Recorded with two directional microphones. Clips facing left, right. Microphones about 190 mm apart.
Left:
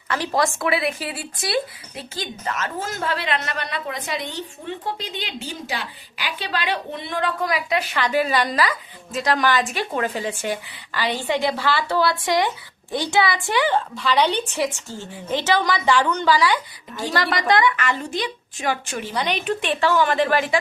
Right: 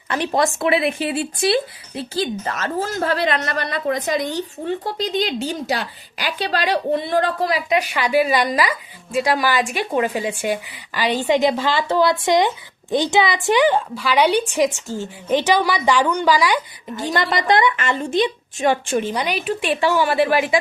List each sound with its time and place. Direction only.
0.1 s speech: 20° right (ahead or behind)
7.7 s a woman's voice: 15° right (ahead or behind)
19.1 s a woman's voice: 10° right (ahead or behind)